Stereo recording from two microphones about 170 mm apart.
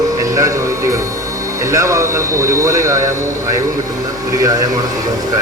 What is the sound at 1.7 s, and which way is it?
Speech, 15° right (ahead or behind).